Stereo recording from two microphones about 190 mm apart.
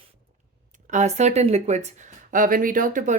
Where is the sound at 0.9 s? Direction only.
40° right (ahead or behind).